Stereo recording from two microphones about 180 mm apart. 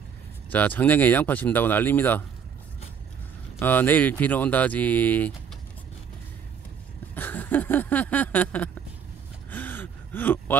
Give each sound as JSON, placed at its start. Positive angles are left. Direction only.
{"t": 0.5, "sound": "speech", "side_deg": 10}
{"t": 3.5, "sound": "speech", "side_deg": 10}
{"t": 7.2, "sound": "a sound", "side_deg": 10}
{"t": 9.5, "sound": "gasp", "side_deg": 10}